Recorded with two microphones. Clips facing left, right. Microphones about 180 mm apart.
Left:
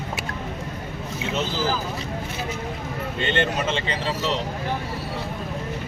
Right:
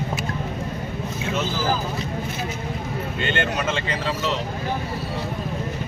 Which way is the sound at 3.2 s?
25° left (ahead or behind).